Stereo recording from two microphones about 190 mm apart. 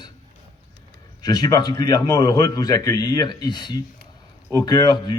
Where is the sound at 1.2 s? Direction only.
20° left (ahead or behind).